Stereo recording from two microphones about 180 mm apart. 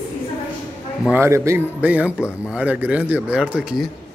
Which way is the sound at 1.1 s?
15° right (ahead or behind).